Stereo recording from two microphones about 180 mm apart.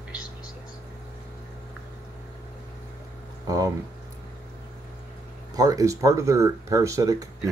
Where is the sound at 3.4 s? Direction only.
20° right (ahead or behind).